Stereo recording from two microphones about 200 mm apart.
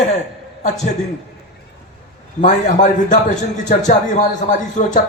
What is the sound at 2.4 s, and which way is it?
A man's voice, 40° left (ahead or behind).